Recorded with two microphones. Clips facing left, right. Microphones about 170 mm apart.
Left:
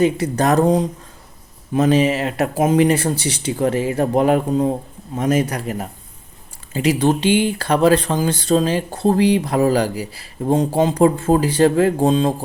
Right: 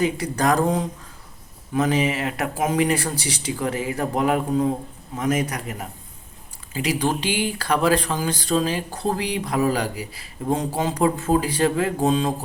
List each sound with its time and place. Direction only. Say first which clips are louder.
0.0 s speech: left 5 dB; 25° left (ahead or behind)